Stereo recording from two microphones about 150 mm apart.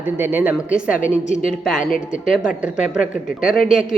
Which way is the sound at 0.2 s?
10° right (ahead or behind).